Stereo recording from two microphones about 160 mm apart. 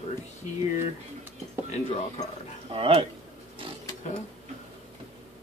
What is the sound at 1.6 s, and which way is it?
Speech, 45° left (ahead or behind).